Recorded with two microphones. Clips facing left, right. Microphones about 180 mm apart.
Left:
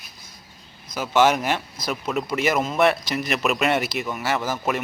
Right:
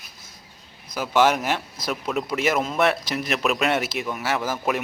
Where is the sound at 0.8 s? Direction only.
10° right (ahead or behind).